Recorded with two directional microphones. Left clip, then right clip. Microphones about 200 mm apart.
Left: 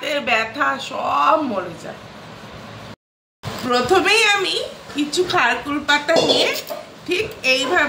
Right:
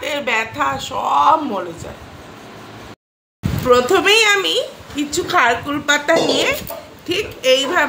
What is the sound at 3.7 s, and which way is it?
A woman's voice, 55° right (ahead or behind).